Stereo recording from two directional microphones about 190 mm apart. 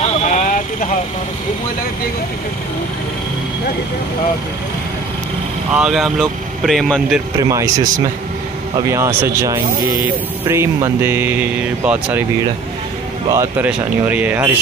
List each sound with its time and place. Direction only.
0.3 s vehicle: 45° left (ahead or behind)
5.7 s speech: 5° right (ahead or behind)
7.3 s speech: 15° right (ahead or behind)
8.8 s speech: 15° right (ahead or behind)
9.8 s speech: 50° right (ahead or behind)
10.4 s speech: 15° right (ahead or behind)
13.3 s speech: 10° right (ahead or behind)